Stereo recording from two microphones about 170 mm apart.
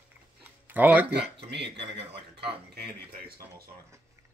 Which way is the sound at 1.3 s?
85° right.